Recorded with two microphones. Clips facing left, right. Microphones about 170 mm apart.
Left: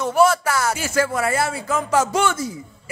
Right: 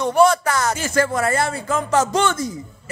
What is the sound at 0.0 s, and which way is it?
Speech, 5° left (ahead or behind).